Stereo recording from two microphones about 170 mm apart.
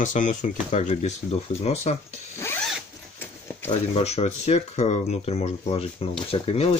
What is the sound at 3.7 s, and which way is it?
Speech, 40° left (ahead or behind).